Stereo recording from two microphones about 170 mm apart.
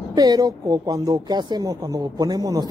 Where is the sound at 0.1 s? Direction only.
25° right (ahead or behind).